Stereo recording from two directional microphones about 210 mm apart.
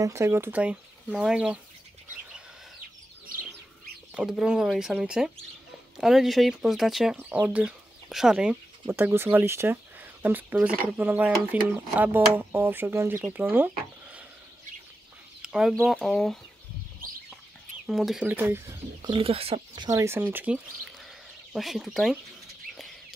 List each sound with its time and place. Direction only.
0.0 s speech: 15° right (ahead or behind)
4.1 s speech: centre (ahead or behind)
15.4 s speech: centre (ahead or behind)
17.8 s speech: centre (ahead or behind)
19.1 s speech: 25° right (ahead or behind); by 22.2 s centre (ahead or behind)